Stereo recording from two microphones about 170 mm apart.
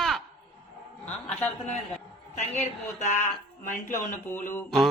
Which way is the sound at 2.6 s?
45° left (ahead or behind).